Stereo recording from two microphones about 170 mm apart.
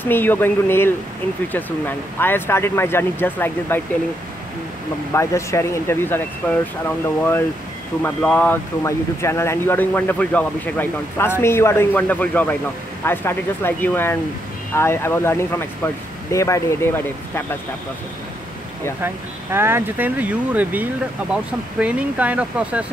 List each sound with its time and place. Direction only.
0.0 s speech: 10° left (ahead or behind)
5.1 s speech: 15° left (ahead or behind)
8.0 s speech: 10° left (ahead or behind)
19.0 s speech: 15° right (ahead or behind)